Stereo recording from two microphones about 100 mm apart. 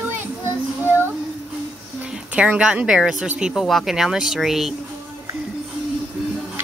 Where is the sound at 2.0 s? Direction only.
10° right (ahead or behind).